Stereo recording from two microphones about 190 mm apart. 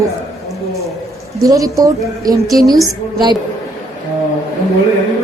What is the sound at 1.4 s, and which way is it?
Speech, 15° right (ahead or behind).